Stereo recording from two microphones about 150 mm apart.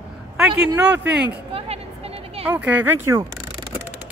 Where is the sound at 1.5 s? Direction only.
40° right (ahead or behind).